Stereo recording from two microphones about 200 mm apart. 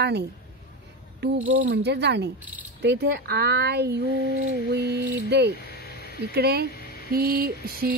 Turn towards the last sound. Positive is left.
turn(degrees=-50)  # may be behind; listen again after turning